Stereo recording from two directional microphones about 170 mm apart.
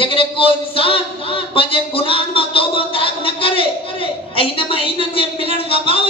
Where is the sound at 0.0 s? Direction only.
30° left (ahead or behind).